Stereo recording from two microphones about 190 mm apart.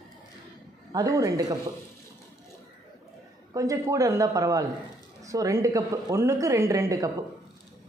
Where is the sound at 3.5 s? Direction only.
15° right (ahead or behind).